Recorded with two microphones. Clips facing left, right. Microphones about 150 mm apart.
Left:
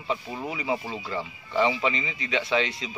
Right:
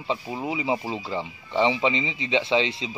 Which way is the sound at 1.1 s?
25° right (ahead or behind).